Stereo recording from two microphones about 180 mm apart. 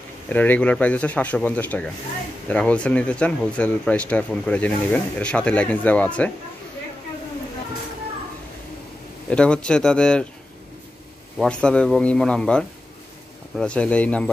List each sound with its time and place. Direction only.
0.3 s speech: 10° left (ahead or behind)
9.3 s a man's voice: 5° left (ahead or behind)
11.3 s a man's voice: 5° left (ahead or behind)